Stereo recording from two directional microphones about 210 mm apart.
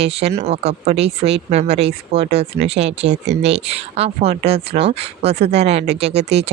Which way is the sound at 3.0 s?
55° right (ahead or behind).